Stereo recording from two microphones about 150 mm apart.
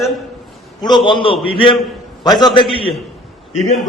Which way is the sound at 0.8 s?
30° left (ahead or behind).